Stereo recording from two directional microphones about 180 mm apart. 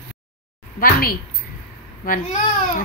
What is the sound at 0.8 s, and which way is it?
Speech, 55° left (ahead or behind).